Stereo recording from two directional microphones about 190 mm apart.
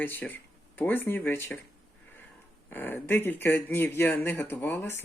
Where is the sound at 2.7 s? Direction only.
10° left (ahead or behind).